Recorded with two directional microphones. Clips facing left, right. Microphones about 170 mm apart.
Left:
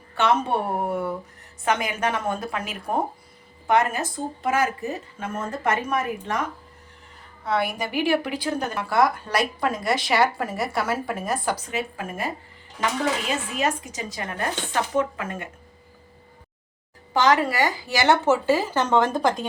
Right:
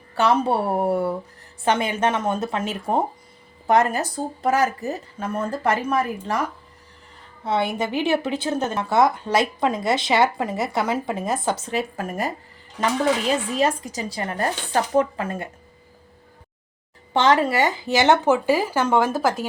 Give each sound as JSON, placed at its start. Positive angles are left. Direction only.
{"t": 0.2, "sound": "a woman's voice", "side_deg": -35}
{"t": 3.7, "sound": "a woman's voice", "side_deg": -35}
{"t": 7.4, "sound": "a woman's voice", "side_deg": -25}
{"t": 11.7, "sound": "a woman's voice", "side_deg": -40}
{"t": 13.6, "sound": "a woman's voice", "side_deg": -35}
{"t": 17.2, "sound": "speech", "side_deg": -25}